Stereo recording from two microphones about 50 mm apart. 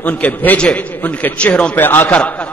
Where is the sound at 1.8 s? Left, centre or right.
Left.